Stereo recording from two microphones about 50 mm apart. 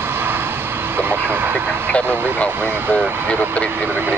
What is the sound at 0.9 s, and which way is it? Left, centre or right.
Vehicle, right.